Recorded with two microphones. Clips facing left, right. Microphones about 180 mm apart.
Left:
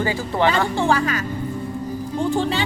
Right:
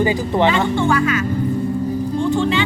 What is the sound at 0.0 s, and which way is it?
Speech, 20° right (ahead or behind).